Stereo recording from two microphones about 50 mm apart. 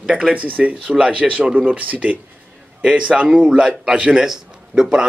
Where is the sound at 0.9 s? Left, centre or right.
Right.